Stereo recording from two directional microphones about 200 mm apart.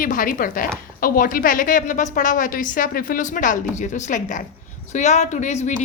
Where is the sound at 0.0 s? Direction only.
40° left (ahead or behind).